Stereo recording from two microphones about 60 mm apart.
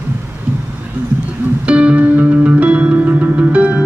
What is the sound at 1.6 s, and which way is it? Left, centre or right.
Music, centre.